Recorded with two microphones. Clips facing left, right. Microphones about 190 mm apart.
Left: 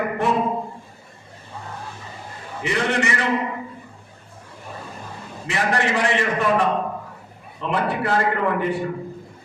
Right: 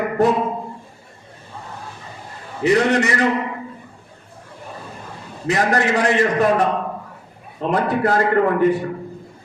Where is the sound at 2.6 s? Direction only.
40° right (ahead or behind).